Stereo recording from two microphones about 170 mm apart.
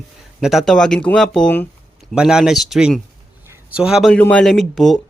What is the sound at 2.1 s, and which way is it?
A man's voice, 5° right (ahead or behind).